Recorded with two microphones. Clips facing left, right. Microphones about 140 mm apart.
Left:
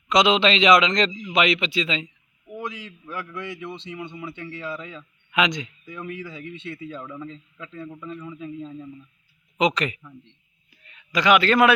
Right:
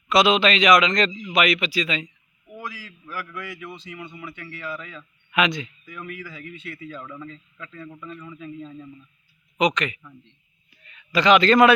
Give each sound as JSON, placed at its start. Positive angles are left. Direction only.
{"t": 0.1, "sound": "a man's voice", "side_deg": 20}
{"t": 9.7, "sound": "speech", "side_deg": 35}
{"t": 10.0, "sound": "a man's voice", "side_deg": 10}